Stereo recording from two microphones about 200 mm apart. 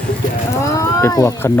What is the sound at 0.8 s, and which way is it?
Speech, 15° left (ahead or behind).